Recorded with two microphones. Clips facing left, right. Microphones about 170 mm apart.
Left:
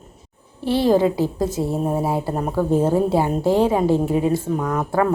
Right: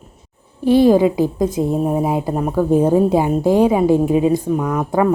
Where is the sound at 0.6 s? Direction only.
15° right (ahead or behind).